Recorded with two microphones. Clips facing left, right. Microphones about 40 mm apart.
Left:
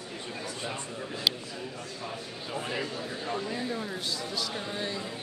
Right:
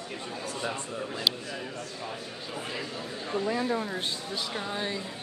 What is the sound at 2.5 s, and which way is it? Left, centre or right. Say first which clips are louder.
Speech: left 3 dB; centre.